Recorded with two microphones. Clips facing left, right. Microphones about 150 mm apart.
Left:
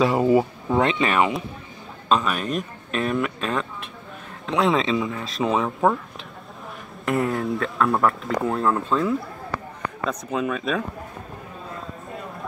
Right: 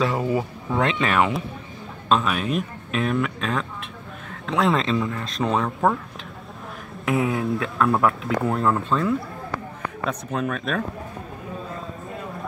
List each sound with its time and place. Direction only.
0.2 s speech: 25° left (ahead or behind)
0.7 s speech: 5° left (ahead or behind)
7.1 s speech: centre (ahead or behind)